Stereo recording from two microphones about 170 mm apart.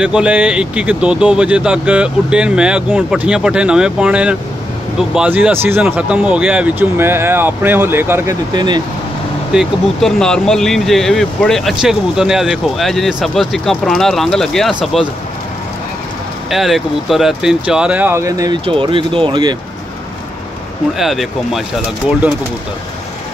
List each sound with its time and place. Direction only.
0.0 s speech: 5° right (ahead or behind)
8.5 s speech: 25° right (ahead or behind)
9.5 s speech: centre (ahead or behind)
16.4 s speech: centre (ahead or behind); by 19.5 s 30° right (ahead or behind)
21.0 s speech: centre (ahead or behind)